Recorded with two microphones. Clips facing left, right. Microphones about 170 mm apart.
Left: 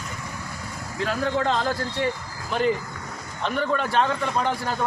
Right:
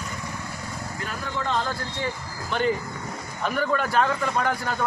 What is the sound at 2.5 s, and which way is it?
A man's voice, centre (ahead or behind).